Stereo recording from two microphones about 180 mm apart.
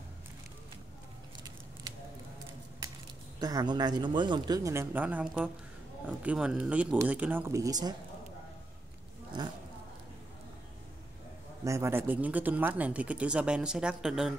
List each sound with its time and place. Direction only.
3.3 s speech: 20° right (ahead or behind)
11.6 s speech: 15° right (ahead or behind)